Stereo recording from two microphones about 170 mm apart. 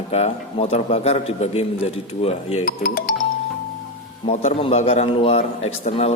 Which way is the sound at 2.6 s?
60° left (ahead or behind).